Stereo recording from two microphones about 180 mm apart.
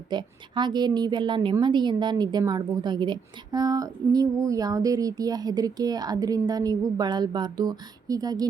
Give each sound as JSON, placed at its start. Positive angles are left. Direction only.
{"t": 0.1, "sound": "a woman's voice", "side_deg": -25}